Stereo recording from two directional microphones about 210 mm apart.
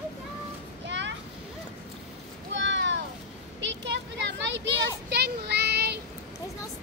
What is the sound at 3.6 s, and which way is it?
Children playing, 55° right (ahead or behind).